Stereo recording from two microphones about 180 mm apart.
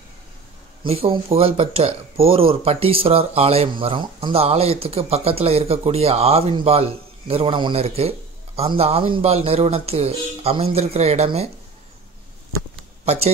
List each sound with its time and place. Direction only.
0.8 s speech: 30° right (ahead or behind)
13.0 s speech: 35° right (ahead or behind)